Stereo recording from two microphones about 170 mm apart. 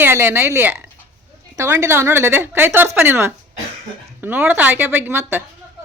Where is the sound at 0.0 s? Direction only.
15° right (ahead or behind).